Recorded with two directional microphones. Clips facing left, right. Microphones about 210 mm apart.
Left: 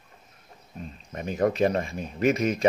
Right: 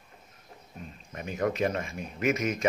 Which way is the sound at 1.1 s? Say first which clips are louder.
Left 5 dB; 35° left (ahead or behind).